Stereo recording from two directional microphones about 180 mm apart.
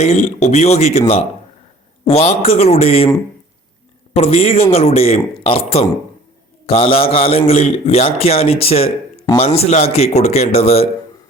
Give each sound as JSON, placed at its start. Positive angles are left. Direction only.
{"t": 0.0, "sound": "a man's voice", "side_deg": 40}
{"t": 4.1, "sound": "a man's voice", "side_deg": 35}